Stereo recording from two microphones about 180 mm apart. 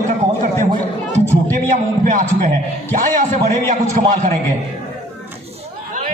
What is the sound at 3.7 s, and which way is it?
Speech, 45° right (ahead or behind).